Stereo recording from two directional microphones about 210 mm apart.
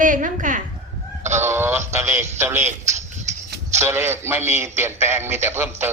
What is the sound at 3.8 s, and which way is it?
A man's voice, 10° right (ahead or behind).